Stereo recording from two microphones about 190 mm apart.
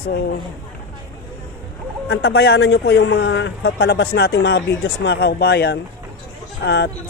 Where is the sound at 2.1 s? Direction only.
60° left (ahead or behind).